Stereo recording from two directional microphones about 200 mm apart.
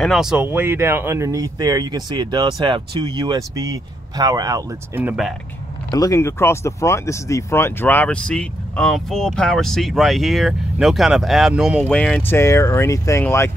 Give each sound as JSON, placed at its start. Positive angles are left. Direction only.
{"t": 0.0, "sound": "speech", "side_deg": 0}
{"t": 5.9, "sound": "speech", "side_deg": 15}